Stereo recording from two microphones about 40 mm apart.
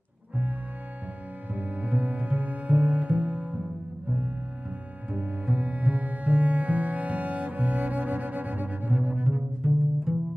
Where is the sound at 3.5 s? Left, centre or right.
Right.